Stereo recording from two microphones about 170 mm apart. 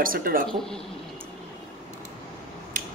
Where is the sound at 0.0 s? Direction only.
55° right (ahead or behind).